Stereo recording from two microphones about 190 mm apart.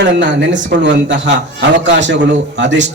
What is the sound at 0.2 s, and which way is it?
A man's voice, 70° right (ahead or behind).